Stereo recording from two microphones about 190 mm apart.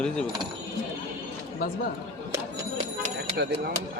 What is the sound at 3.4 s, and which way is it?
Speech, 60° right (ahead or behind).